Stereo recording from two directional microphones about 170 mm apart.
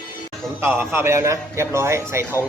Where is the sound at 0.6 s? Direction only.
15° right (ahead or behind).